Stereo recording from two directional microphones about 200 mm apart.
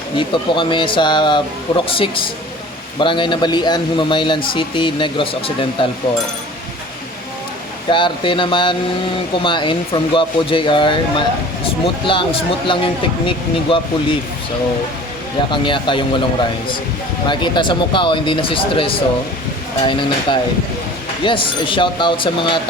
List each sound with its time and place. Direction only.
0.2 s speech: 25° left (ahead or behind)
7.9 s speech: 25° left (ahead or behind)
15.5 s speech: 25° left (ahead or behind)
17.2 s speech: 25° left (ahead or behind)